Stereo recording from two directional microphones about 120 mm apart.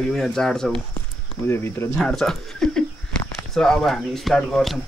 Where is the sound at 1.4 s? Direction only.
20° left (ahead or behind).